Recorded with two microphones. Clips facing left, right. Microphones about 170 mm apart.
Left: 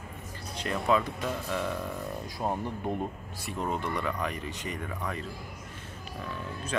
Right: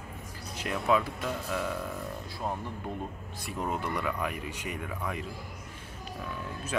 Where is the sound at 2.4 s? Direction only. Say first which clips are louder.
Left 4 dB; 20° left (ahead or behind).